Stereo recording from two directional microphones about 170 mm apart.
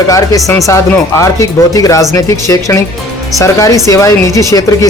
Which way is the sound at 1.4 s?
20° left (ahead or behind).